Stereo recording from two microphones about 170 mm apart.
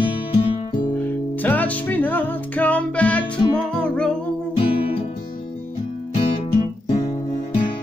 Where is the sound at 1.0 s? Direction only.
10° left (ahead or behind).